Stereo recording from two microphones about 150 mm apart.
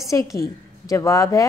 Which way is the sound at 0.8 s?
20° left (ahead or behind).